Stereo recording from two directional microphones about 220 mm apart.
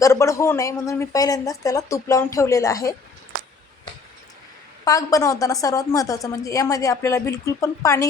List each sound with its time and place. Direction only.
0.0 s a woman's voice: 15° left (ahead or behind)
4.9 s a woman's voice: 15° left (ahead or behind)